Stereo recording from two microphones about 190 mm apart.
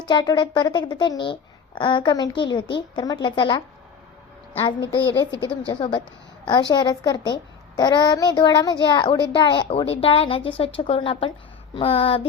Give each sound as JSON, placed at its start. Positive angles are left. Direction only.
{"t": 0.1, "sound": "a woman's voice", "side_deg": 20}
{"t": 5.4, "sound": "a woman's voice", "side_deg": 25}